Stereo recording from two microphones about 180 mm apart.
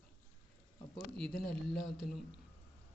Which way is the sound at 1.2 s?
Centre (ahead or behind).